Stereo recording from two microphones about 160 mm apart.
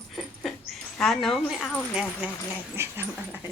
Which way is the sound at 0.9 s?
Centre (ahead or behind).